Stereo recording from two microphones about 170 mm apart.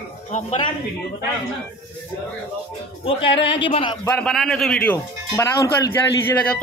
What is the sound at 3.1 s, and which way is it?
Speech, 30° left (ahead or behind).